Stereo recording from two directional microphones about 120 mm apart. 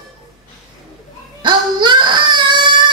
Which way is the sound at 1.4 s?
40° right (ahead or behind).